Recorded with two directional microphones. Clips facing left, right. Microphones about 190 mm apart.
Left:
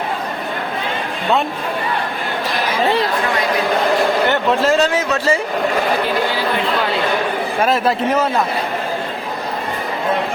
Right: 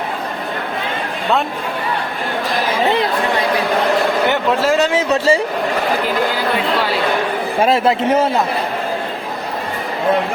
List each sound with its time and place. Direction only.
4.3 s a man's voice: 15° right (ahead or behind)
4.9 s speech: 30° right (ahead or behind)
7.6 s speech: 25° right (ahead or behind)